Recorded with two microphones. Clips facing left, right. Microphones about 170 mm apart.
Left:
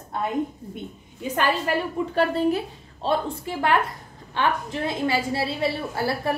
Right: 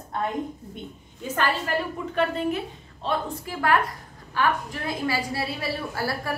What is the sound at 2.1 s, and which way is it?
A woman's voice, 35° left (ahead or behind).